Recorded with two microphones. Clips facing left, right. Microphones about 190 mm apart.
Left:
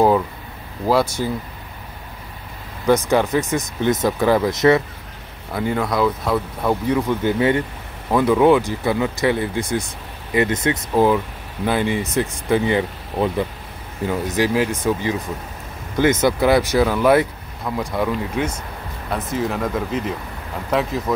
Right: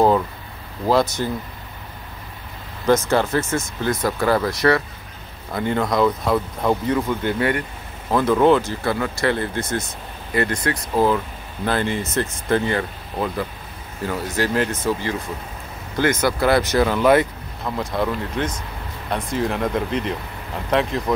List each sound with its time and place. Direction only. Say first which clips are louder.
0.8 s speech: even; 10° left (ahead or behind)
2.9 s speech: left 1 dB; 15° left (ahead or behind)
5.5 s speech: even; 5° left (ahead or behind)